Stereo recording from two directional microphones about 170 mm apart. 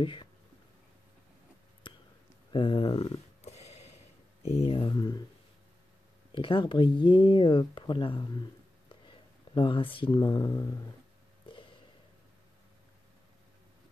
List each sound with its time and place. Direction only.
0.0 s speech: 30° left (ahead or behind)
1.8 s a sound: 30° left (ahead or behind)
4.5 s speech: 35° left (ahead or behind)
6.3 s speech: 30° left (ahead or behind)